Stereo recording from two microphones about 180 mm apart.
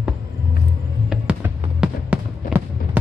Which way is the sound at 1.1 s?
5° right (ahead or behind).